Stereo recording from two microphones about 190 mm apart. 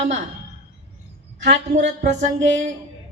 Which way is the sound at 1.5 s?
65° right (ahead or behind).